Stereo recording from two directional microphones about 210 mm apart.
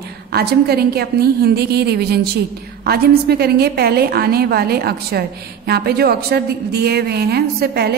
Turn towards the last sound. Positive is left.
turn(degrees=-50)  # may be behind; listen again after turning